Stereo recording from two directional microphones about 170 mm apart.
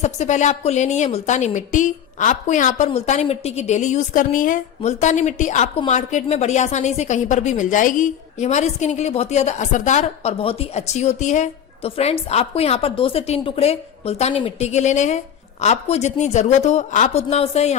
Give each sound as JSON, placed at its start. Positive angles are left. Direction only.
{"t": 0.0, "sound": "a woman's voice", "side_deg": 45}